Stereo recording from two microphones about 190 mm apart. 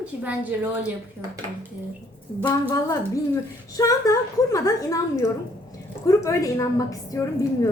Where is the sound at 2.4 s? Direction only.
15° left (ahead or behind).